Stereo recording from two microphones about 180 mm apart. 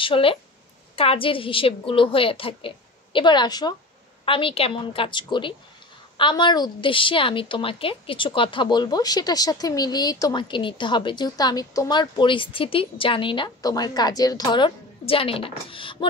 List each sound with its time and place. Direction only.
0.0 s a woman's voice: 30° left (ahead or behind)